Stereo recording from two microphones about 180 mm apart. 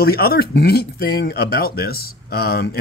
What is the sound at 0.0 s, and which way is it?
Speech, 60° left (ahead or behind).